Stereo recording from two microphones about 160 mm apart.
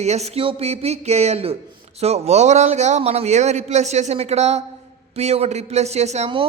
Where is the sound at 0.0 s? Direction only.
45° right (ahead or behind).